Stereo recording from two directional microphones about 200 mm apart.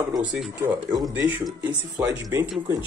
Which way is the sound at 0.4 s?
Centre (ahead or behind).